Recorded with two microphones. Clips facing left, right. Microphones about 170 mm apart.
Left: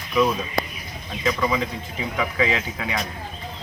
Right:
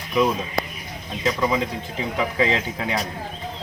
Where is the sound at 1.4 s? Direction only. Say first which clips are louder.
Right 1 dB; 25° right (ahead or behind).